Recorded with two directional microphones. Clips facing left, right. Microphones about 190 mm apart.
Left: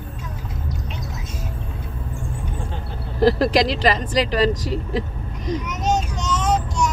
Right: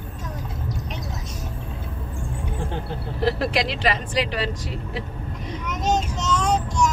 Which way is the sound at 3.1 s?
40° left (ahead or behind).